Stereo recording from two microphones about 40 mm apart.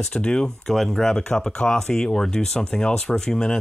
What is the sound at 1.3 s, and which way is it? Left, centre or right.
Speech, left.